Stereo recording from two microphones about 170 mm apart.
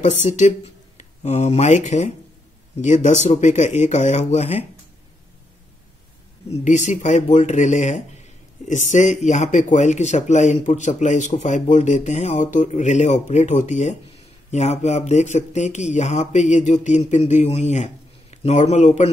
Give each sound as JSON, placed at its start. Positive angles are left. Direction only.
{"t": 0.4, "sound": "speech", "side_deg": 45}
{"t": 6.5, "sound": "a man's voice", "side_deg": 45}